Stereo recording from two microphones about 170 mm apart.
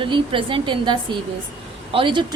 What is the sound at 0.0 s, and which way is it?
A woman's voice, 30° right (ahead or behind).